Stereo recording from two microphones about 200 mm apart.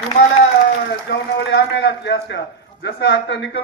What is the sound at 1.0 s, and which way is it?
A man's voice, 60° left (ahead or behind).